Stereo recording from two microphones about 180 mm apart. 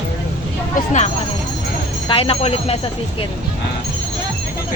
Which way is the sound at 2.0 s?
30° left (ahead or behind).